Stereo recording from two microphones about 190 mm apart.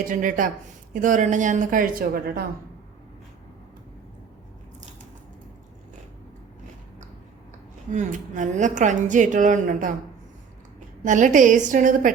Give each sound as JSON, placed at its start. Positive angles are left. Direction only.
{"t": 0.1, "sound": "a woman's voice", "side_deg": -45}
{"t": 7.9, "sound": "a woman's voice", "side_deg": -40}
{"t": 11.0, "sound": "a woman's voice", "side_deg": -40}